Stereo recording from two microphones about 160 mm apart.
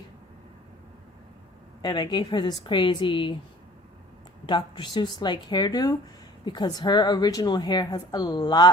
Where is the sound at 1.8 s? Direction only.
25° left (ahead or behind).